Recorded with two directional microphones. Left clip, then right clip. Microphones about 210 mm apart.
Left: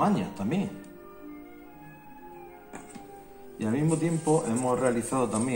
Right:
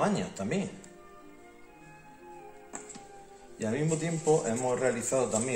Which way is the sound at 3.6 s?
25° right (ahead or behind).